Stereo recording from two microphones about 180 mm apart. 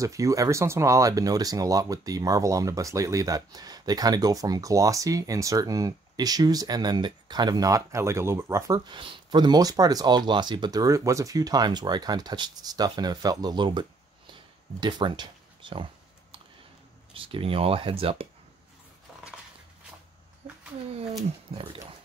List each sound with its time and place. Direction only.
0.0 s speech: 15° right (ahead or behind)
14.3 s a sound: 25° right (ahead or behind)
17.1 s speech: 30° right (ahead or behind)
21.5 s speech: 35° right (ahead or behind)